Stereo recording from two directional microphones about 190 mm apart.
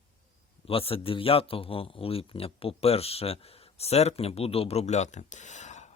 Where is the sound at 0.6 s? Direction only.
30° left (ahead or behind).